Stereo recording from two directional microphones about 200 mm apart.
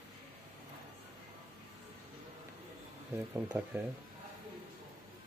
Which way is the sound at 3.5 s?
15° right (ahead or behind).